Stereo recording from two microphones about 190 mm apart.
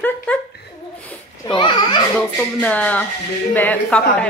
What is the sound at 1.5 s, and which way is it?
Speech, 25° left (ahead or behind).